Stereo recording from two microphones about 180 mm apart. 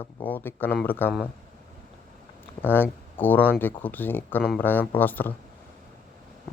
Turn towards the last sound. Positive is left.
turn(degrees=10)  # may be behind; listen again after turning